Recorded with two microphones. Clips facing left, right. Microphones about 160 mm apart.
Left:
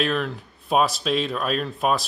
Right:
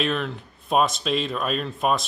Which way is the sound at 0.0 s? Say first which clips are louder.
Left 1 dB; centre (ahead or behind).